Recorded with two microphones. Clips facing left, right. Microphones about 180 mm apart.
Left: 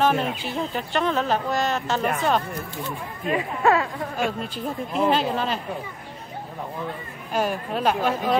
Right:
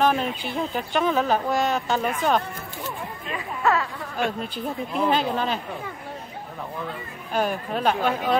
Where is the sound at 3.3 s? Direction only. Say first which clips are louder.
Left 4 dB; 30° left (ahead or behind).